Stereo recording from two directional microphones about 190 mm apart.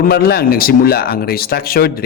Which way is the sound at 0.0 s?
55° left (ahead or behind).